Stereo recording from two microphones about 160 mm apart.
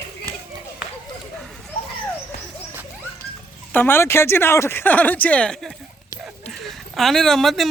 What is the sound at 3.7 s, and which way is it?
Speech, 15° left (ahead or behind).